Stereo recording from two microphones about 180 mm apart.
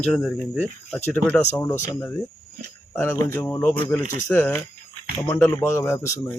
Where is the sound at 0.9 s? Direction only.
10° left (ahead or behind).